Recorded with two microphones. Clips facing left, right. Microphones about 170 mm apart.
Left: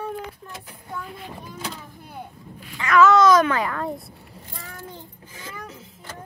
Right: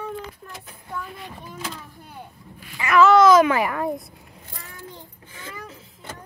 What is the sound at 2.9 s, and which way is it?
Speech, 30° right (ahead or behind).